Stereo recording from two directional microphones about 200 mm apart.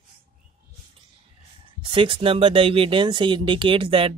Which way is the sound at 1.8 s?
25° right (ahead or behind).